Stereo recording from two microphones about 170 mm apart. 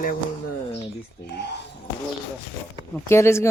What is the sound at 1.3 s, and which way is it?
Speech, 80° left.